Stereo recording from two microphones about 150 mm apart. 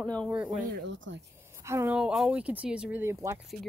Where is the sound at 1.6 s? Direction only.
20° right (ahead or behind).